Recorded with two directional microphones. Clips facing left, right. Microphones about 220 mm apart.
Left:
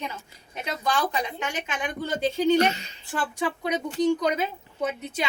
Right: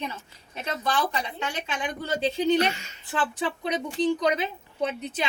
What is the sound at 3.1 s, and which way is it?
A woman's voice, 10° left (ahead or behind).